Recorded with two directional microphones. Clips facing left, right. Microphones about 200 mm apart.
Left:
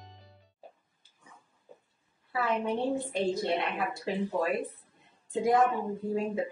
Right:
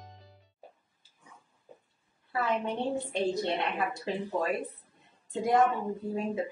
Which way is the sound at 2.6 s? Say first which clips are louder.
Left 2 dB; centre (ahead or behind).